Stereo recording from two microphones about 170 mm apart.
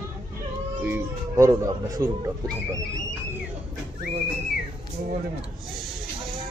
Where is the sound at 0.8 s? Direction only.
15° right (ahead or behind).